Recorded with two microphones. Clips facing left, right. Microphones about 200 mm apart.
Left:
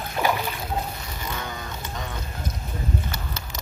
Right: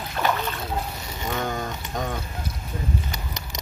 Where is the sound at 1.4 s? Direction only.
45° right (ahead or behind).